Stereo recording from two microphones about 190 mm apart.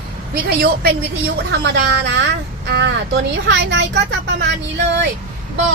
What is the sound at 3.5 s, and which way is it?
Speech, 65° right (ahead or behind).